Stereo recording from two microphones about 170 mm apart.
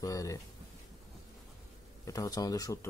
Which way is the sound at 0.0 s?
20° left (ahead or behind).